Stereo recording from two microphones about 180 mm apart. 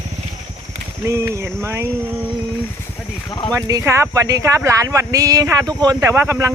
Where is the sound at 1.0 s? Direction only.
15° right (ahead or behind).